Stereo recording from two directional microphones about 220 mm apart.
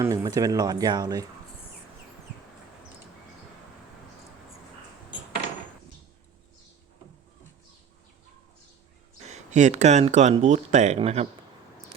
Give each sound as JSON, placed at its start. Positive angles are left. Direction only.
{"t": 0.0, "sound": "speech", "side_deg": -15}
{"t": 9.2, "sound": "speech", "side_deg": -30}